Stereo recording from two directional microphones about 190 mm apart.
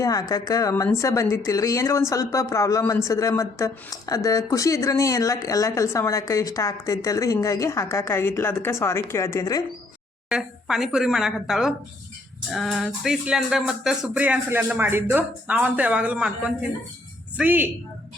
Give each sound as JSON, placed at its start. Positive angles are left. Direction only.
{"t": 0.0, "sound": "a woman's voice", "side_deg": 20}
{"t": 10.2, "sound": "speech", "side_deg": -5}